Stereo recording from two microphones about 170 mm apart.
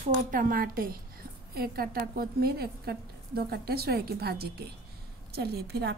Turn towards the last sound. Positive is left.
turn(degrees=-70)  # may be behind; listen again after turning